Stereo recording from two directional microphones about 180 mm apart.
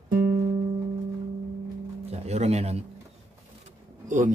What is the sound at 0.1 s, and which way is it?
Music, 55° right (ahead or behind).